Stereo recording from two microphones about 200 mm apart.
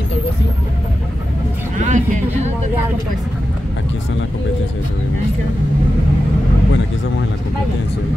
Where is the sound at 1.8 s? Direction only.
35° right (ahead or behind).